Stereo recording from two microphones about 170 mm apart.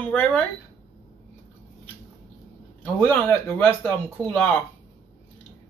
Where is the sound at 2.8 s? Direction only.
10° left (ahead or behind).